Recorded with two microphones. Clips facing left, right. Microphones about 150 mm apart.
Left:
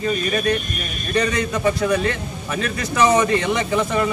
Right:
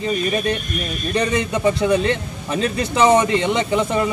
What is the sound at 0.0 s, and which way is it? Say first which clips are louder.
A man's voice: even; 25° right (ahead or behind).